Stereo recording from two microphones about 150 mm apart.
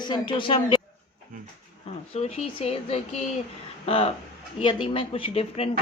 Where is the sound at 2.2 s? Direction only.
45° left (ahead or behind).